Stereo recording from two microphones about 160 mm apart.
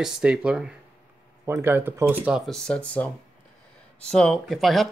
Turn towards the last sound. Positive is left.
turn(degrees=0)  # may be behind; listen again after turning